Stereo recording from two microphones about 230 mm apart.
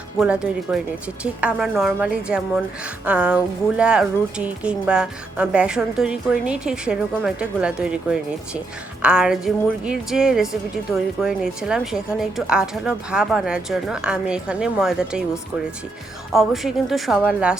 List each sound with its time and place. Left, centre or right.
0.2 s a woman's voice: centre
16.3 s a woman's voice: centre